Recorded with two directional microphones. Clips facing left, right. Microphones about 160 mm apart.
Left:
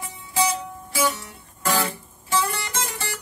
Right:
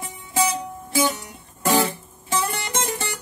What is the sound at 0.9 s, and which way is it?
Music, 25° right (ahead or behind).